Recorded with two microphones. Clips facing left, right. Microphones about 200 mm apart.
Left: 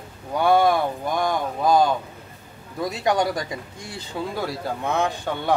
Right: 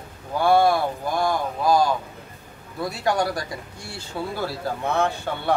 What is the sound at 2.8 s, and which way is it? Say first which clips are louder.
Speech: left 1 dB; 20° left (ahead or behind).